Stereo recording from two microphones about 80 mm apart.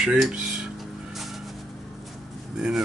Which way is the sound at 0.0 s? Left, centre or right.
Centre.